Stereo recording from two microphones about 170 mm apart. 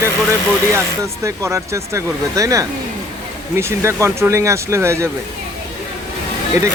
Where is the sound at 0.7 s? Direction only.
15° right (ahead or behind).